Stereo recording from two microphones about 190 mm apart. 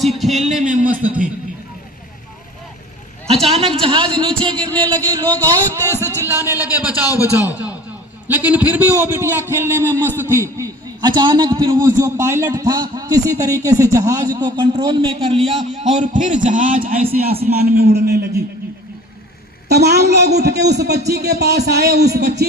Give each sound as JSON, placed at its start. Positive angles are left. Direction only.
{"t": 0.0, "sound": "a man's voice", "side_deg": 0}
{"t": 0.6, "sound": "a man's voice", "side_deg": -45}
{"t": 3.2, "sound": "a man's voice", "side_deg": -30}
{"t": 4.5, "sound": "speech", "side_deg": 10}
{"t": 4.9, "sound": "a man's voice", "side_deg": -20}
{"t": 7.5, "sound": "a sound", "side_deg": -10}
{"t": 8.3, "sound": "a man's voice", "side_deg": -10}
{"t": 19.6, "sound": "a woman's voice", "side_deg": -60}